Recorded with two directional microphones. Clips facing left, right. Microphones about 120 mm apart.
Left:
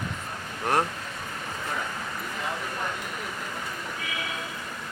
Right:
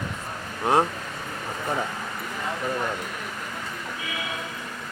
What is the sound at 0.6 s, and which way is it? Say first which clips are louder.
Speech: right 4 dB; 15° right (ahead or behind).